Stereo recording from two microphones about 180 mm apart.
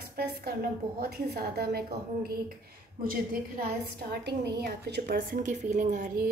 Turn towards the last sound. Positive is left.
turn(degrees=-45)  # may be behind; listen again after turning